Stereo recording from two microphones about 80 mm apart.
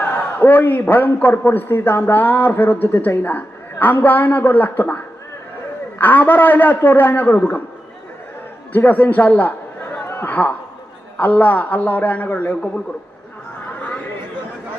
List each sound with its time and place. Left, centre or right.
0.0 s a man's voice: left
8.7 s a man's voice: left